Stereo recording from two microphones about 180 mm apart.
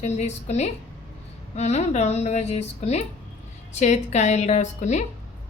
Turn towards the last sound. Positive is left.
turn(degrees=40)  # may be behind; listen again after turning